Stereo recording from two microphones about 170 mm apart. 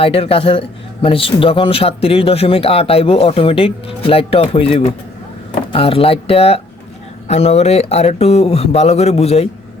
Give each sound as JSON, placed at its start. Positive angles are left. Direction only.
{"t": 0.0, "sound": "a man's voice", "side_deg": 35}